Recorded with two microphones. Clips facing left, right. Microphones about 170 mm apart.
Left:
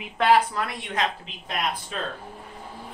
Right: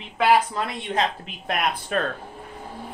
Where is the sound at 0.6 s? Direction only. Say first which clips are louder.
Right 3 dB; 25° right (ahead or behind).